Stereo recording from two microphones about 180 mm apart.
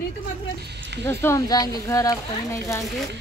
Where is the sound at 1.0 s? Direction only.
15° left (ahead or behind).